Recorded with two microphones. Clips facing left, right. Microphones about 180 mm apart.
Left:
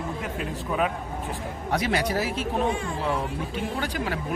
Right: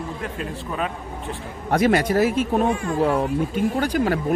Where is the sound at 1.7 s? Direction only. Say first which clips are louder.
Right 7 dB; 50° right (ahead or behind).